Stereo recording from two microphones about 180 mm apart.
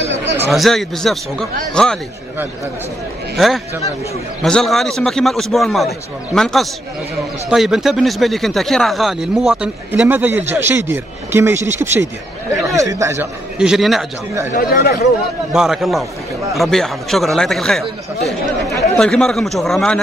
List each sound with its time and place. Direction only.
0.5 s speech: centre (ahead or behind)
3.3 s speech: centre (ahead or behind)
13.6 s speech: centre (ahead or behind)
14.5 s speech: 50° left (ahead or behind)
15.5 s speech: centre (ahead or behind)
18.9 s speech: 5° left (ahead or behind)